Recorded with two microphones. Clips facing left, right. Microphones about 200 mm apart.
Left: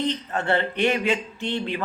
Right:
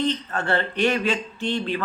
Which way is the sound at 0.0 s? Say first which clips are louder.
Right 1 dB; 20° left (ahead or behind).